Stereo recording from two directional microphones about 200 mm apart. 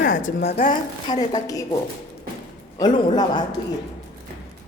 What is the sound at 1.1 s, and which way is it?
A woman's voice, 20° left (ahead or behind).